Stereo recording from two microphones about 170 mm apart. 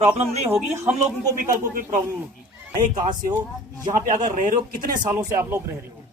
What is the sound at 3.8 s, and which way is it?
Speech, 50° right (ahead or behind).